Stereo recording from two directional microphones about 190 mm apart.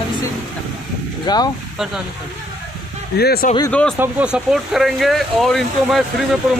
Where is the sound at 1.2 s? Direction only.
20° left (ahead or behind).